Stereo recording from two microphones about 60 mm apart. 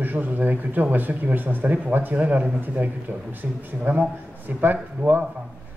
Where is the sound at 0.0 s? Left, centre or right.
Right.